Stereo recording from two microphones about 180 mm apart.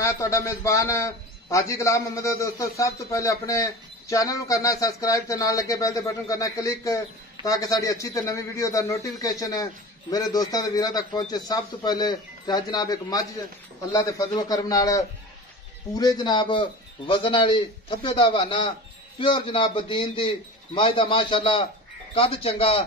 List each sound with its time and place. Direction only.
0.0 s a man's voice: 15° left (ahead or behind); by 22.8 s 30° left (ahead or behind)